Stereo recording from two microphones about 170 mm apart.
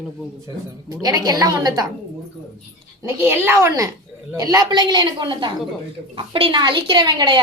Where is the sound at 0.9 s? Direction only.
20° right (ahead or behind).